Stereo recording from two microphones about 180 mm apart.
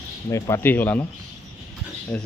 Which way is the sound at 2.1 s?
5° left (ahead or behind).